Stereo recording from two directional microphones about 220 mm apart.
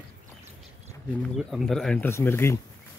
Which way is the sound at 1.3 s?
Centre (ahead or behind).